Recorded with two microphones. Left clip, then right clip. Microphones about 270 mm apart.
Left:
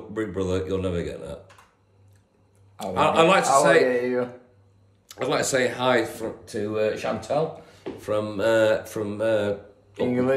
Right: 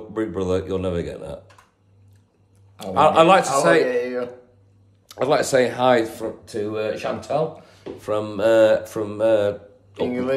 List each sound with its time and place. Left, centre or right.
0.1 s speech: centre
2.8 s speech: centre
3.8 s speech: centre
5.0 s speech: centre
10.0 s speech: centre